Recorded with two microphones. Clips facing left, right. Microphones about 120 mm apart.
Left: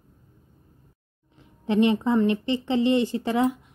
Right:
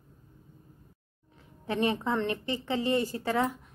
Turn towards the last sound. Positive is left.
turn(degrees=15)  # may be behind; listen again after turning